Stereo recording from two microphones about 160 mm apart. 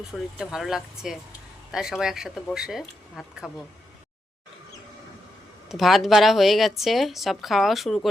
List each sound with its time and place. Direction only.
0.3 s speech: centre (ahead or behind)
5.6 s speech: centre (ahead or behind)